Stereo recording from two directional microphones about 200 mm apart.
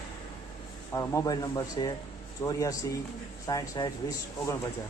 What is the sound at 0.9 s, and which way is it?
Speech, 15° left (ahead or behind).